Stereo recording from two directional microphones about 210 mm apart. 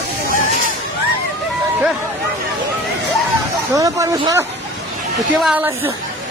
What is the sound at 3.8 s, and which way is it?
Speech, 15° right (ahead or behind).